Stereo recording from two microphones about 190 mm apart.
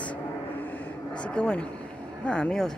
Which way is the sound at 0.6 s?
10° left (ahead or behind).